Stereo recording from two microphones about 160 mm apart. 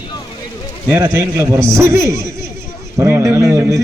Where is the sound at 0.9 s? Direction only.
15° right (ahead or behind).